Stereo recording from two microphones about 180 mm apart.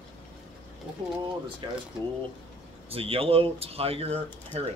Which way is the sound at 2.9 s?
30° right (ahead or behind).